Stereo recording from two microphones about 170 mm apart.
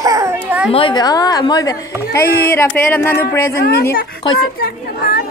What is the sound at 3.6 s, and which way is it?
Speech, 65° left (ahead or behind).